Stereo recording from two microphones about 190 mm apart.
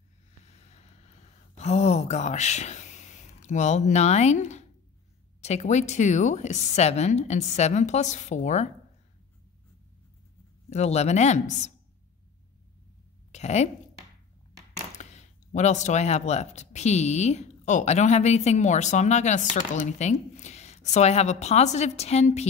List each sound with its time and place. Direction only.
0.5 s a sound: 35° left (ahead or behind)
5.4 s speech: 35° left (ahead or behind)
10.7 s speech: 35° left (ahead or behind)
13.3 s a woman's voice: 35° left (ahead or behind)
15.0 s speech: 40° left (ahead or behind)